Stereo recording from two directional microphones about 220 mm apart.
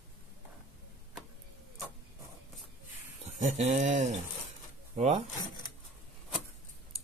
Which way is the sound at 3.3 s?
35° right (ahead or behind).